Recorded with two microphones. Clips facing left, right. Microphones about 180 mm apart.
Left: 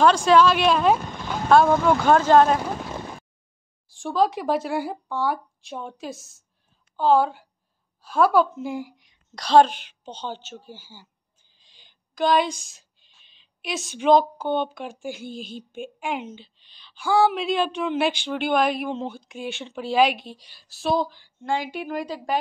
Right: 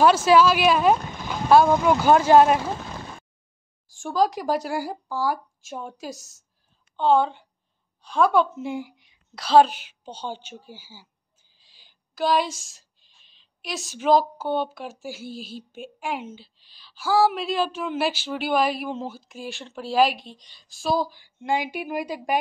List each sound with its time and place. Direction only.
0.0 s a woman's voice: 5° right (ahead or behind)
3.8 s a woman's voice: centre (ahead or behind)